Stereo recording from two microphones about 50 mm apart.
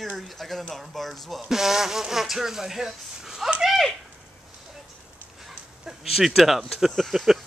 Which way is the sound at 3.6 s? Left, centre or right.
Centre.